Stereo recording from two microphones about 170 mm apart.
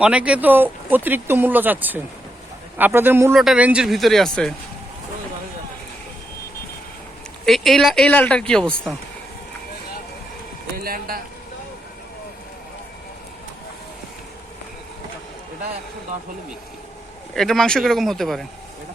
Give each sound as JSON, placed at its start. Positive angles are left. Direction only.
{"t": 0.0, "sound": "speech", "side_deg": -5}
{"t": 3.3, "sound": "speech", "side_deg": -5}
{"t": 7.4, "sound": "speech", "side_deg": 0}
{"t": 10.8, "sound": "speech", "side_deg": -60}
{"t": 17.3, "sound": "speech", "side_deg": 0}